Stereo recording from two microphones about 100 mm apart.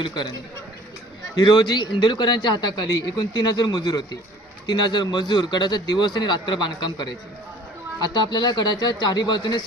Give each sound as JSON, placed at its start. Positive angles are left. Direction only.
{"t": 0.0, "sound": "a man's voice", "side_deg": 50}
{"t": 1.4, "sound": "a man's voice", "side_deg": 45}